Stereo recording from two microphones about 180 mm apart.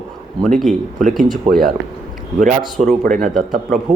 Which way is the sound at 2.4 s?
40° right (ahead or behind).